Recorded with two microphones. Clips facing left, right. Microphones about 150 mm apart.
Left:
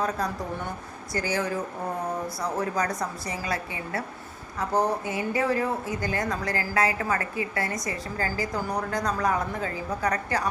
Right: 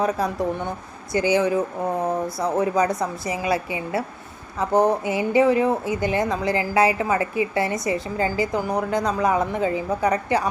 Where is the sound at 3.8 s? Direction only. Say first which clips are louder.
Right 6 dB; 20° right (ahead or behind).